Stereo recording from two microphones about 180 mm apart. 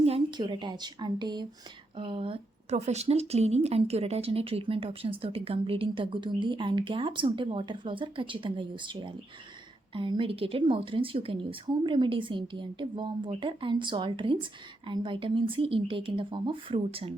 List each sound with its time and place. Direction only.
0.0 s speech: 30° right (ahead or behind)